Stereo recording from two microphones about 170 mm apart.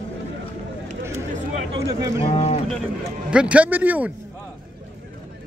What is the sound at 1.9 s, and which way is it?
Speech, 40° left (ahead or behind).